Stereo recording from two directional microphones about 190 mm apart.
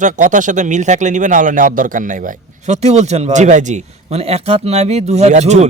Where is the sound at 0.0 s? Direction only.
40° right (ahead or behind).